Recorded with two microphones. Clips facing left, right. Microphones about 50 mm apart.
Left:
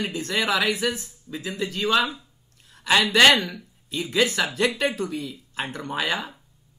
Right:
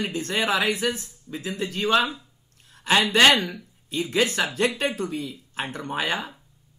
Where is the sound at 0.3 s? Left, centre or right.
Right.